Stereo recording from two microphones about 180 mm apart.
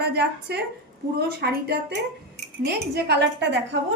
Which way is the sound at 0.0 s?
65° right (ahead or behind).